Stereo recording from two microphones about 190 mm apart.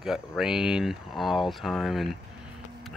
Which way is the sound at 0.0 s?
5° right (ahead or behind).